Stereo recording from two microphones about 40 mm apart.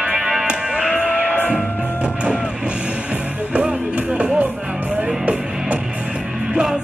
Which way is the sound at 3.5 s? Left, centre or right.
Right.